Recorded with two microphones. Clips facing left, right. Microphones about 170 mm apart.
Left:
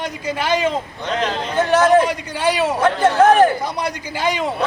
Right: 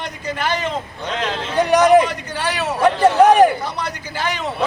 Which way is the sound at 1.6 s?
15° right (ahead or behind).